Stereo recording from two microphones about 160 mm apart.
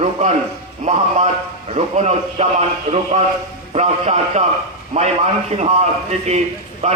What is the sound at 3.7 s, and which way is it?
A man's voice, 45° right (ahead or behind).